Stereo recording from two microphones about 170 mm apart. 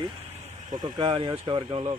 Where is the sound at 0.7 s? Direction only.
25° right (ahead or behind).